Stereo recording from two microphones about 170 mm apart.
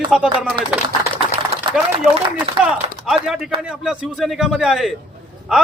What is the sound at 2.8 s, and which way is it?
Speech, 35° right (ahead or behind).